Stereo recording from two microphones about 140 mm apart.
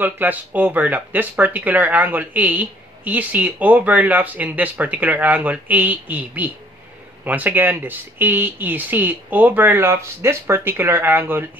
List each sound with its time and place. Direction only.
0.0 s speech: 15° right (ahead or behind)